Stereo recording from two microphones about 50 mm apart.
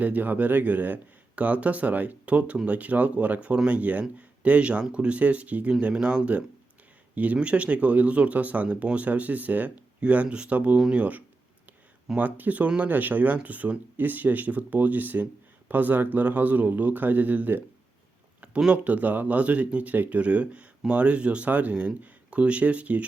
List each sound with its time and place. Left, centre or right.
0.0 s speech: right
10.8 s speech: centre
12.1 s speech: right
18.3 s a sound: right
18.9 s speech: right